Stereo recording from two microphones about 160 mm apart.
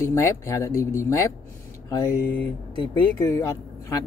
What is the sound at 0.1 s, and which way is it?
Speech, 20° left (ahead or behind).